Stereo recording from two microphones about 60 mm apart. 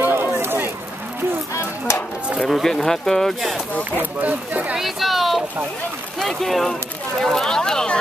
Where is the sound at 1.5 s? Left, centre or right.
Left.